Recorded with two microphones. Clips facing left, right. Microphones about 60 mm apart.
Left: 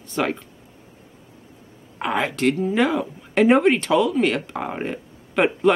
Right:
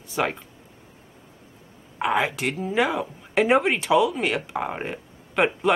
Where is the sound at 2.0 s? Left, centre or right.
Centre.